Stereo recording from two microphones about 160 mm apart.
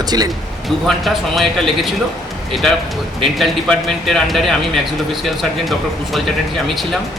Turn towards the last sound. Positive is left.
turn(degrees=0)  # may be behind; listen again after turning